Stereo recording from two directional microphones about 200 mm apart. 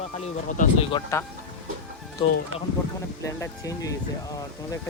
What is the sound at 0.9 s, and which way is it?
Speech, 20° left (ahead or behind).